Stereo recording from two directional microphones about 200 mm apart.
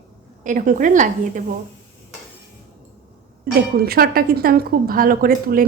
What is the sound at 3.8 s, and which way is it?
Speech, 50° right (ahead or behind).